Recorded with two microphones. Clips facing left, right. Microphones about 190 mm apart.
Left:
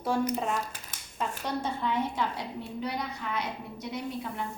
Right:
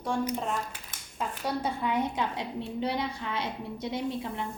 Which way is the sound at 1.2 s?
10° right (ahead or behind).